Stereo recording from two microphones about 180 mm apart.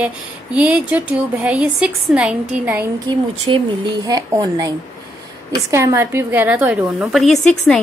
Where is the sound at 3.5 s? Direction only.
30° right (ahead or behind).